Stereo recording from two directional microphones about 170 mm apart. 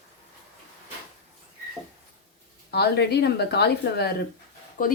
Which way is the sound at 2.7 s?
75° left (ahead or behind).